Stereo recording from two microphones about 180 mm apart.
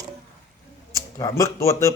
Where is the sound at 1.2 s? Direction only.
15° left (ahead or behind).